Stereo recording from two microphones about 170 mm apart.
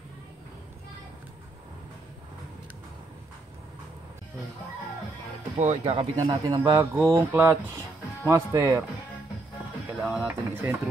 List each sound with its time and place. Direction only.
5.6 s speech: 40° right (ahead or behind); by 8.8 s 15° right (ahead or behind)
10.0 s speech: 5° right (ahead or behind)